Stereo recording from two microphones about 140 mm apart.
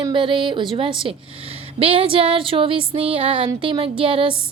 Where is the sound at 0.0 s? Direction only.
35° right (ahead or behind).